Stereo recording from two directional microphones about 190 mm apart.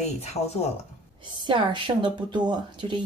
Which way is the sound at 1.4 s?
25° right (ahead or behind).